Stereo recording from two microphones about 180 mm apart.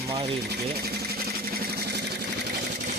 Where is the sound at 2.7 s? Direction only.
45° right (ahead or behind).